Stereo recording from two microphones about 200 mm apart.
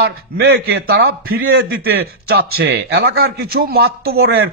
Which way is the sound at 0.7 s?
60° right (ahead or behind).